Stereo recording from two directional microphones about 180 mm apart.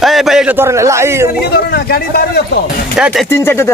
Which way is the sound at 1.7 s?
60° left (ahead or behind).